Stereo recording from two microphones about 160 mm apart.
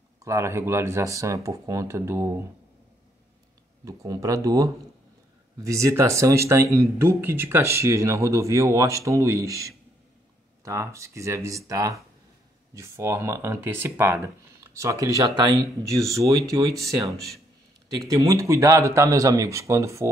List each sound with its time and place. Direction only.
0.2 s speech: 20° right (ahead or behind)
3.8 s speech: 20° right (ahead or behind)
18.1 s speech: 20° right (ahead or behind)